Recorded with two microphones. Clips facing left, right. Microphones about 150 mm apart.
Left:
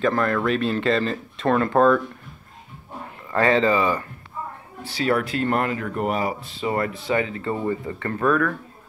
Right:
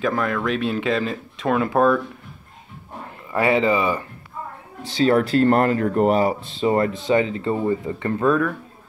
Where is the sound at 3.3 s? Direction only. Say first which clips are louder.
Even; 15° right (ahead or behind).